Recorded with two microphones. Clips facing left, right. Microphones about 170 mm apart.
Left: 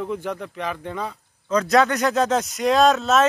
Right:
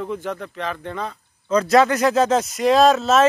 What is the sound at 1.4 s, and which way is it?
Speech, centre (ahead or behind).